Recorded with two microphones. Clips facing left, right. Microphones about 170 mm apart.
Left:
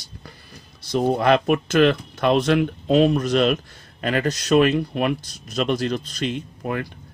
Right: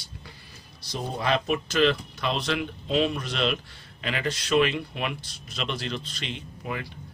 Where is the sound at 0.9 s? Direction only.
60° left (ahead or behind).